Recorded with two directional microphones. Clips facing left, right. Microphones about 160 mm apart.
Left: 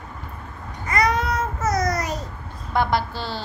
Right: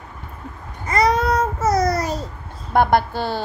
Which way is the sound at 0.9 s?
35° right (ahead or behind).